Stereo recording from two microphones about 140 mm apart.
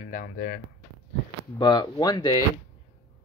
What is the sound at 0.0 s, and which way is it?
Speech, 90° left.